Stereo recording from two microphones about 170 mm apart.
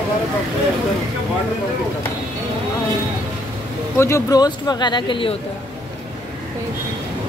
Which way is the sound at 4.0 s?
20° left (ahead or behind).